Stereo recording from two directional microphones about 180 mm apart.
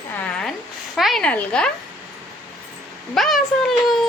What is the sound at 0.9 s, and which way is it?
Speech, centre (ahead or behind).